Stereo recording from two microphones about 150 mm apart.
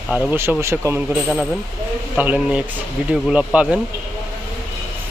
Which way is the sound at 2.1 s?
10° right (ahead or behind).